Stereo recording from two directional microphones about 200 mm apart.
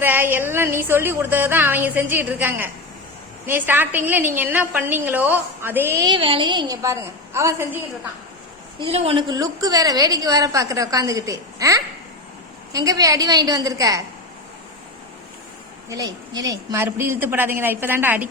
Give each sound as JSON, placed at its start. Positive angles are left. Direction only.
{"t": 0.0, "sound": "a woman's voice", "side_deg": -10}
{"t": 6.1, "sound": "a woman's voice", "side_deg": -25}
{"t": 8.9, "sound": "a woman's voice", "side_deg": -30}
{"t": 15.9, "sound": "a woman's voice", "side_deg": -20}